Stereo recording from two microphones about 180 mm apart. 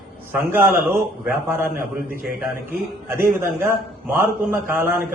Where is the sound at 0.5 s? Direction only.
10° right (ahead or behind).